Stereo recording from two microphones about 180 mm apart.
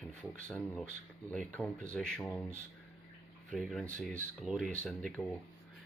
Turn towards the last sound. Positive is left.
turn(degrees=0)  # may be behind; listen again after turning